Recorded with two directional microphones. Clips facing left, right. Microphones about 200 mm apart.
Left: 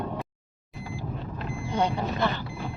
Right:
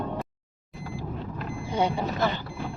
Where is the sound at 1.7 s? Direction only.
10° right (ahead or behind).